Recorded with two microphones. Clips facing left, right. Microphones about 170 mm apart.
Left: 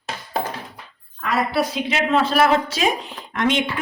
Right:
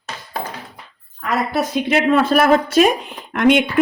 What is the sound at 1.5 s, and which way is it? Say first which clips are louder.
Speech: right 4 dB; 55° right (ahead or behind).